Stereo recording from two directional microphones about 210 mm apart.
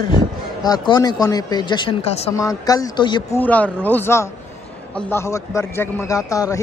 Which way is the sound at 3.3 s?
5° left (ahead or behind).